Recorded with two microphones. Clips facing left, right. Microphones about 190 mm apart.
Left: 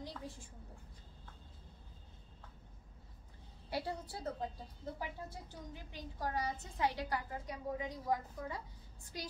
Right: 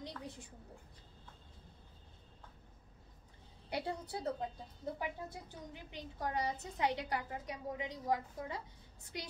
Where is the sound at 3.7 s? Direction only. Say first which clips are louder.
Right 1 dB; 20° right (ahead or behind).